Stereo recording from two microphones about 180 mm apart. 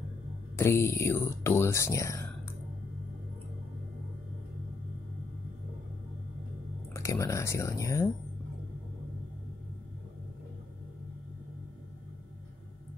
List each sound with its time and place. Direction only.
0.6 s speech: 15° left (ahead or behind)
6.9 s speech: 15° left (ahead or behind)